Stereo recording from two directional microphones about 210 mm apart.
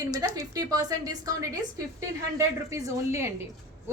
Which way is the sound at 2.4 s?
15° right (ahead or behind).